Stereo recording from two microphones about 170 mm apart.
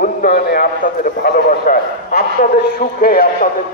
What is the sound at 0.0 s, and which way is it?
A man's voice, 65° left (ahead or behind).